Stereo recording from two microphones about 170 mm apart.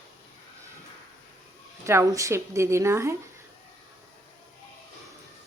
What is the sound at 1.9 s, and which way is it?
A woman's voice, 15° right (ahead or behind).